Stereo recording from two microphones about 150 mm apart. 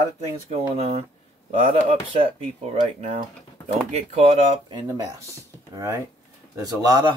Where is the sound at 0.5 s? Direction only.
45° right (ahead or behind).